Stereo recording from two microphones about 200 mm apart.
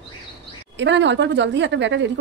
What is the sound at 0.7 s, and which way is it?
A woman's voice, 65° right (ahead or behind).